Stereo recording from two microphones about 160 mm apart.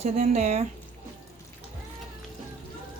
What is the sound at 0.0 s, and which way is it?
Speech, 45° right (ahead or behind).